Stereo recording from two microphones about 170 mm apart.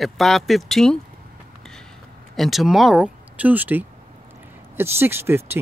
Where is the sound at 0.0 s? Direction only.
Centre (ahead or behind).